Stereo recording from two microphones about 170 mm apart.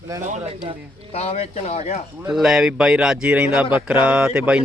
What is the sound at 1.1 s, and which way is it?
Speech, 35° left (ahead or behind).